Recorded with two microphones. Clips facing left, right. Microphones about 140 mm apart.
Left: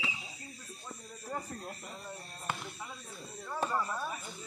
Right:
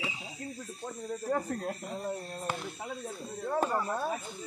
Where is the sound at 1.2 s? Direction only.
80° right.